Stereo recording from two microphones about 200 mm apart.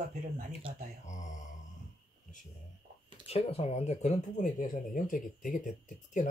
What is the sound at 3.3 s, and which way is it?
Speech, 30° left (ahead or behind).